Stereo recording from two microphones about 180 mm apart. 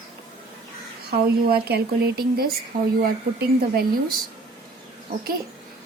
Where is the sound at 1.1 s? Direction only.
60° right (ahead or behind).